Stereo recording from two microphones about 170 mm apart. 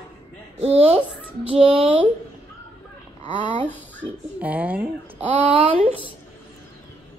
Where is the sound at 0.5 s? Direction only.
35° right (ahead or behind).